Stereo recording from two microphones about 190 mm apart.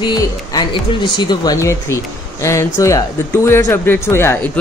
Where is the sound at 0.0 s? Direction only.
20° left (ahead or behind).